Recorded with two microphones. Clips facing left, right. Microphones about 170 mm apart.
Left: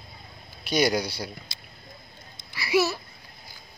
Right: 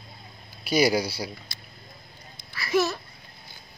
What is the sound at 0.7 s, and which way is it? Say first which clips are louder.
Speech: right 2 dB; 5° right (ahead or behind).